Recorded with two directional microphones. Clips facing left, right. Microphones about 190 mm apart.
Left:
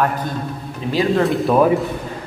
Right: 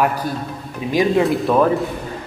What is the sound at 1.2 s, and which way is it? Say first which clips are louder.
Speech: left 1 dB; centre (ahead or behind).